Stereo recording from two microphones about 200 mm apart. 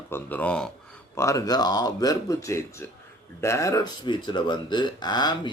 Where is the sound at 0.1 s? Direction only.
10° left (ahead or behind).